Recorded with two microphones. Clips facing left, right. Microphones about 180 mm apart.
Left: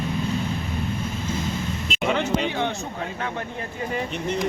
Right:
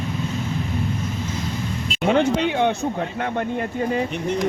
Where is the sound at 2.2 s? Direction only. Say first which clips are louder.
Right 5 dB; 55° right (ahead or behind).